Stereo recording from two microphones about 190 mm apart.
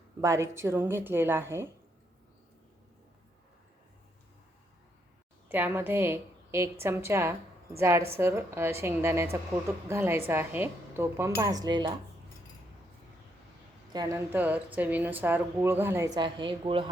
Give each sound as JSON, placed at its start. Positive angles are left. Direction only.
{"t": 0.2, "sound": "a woman's voice", "side_deg": -15}
{"t": 5.5, "sound": "a woman's voice", "side_deg": -10}
{"t": 13.9, "sound": "speech", "side_deg": -20}
{"t": 14.3, "sound": "a woman's voice", "side_deg": -10}